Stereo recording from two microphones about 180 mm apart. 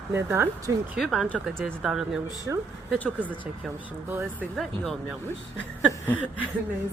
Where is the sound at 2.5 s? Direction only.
15° right (ahead or behind).